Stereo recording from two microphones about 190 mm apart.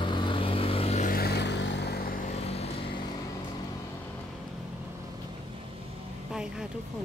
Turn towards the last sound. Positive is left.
turn(degrees=-5)  # may be behind; listen again after turning